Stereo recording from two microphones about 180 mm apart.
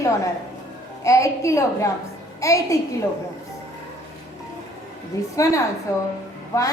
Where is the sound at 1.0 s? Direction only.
15° left (ahead or behind).